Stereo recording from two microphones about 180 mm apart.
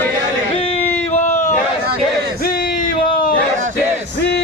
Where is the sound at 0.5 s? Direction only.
30° left (ahead or behind).